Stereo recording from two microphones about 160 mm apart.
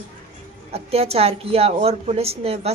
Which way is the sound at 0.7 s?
40° right (ahead or behind).